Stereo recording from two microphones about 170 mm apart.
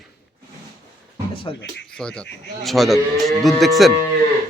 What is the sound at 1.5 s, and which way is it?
Speech, 25° left (ahead or behind).